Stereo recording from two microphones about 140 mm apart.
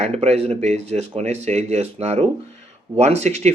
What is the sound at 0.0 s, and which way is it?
Speech, 50° right (ahead or behind).